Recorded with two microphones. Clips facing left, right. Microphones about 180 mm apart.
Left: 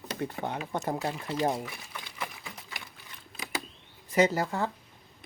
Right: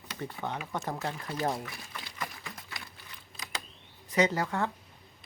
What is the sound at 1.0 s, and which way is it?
Speech, 10° left (ahead or behind).